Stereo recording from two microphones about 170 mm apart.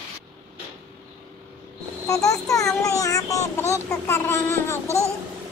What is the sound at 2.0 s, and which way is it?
A child's voice, 20° left (ahead or behind).